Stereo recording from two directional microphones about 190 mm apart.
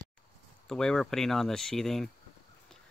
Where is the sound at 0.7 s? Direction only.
5° left (ahead or behind).